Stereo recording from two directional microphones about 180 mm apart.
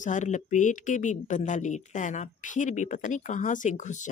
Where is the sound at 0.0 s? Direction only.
45° left (ahead or behind).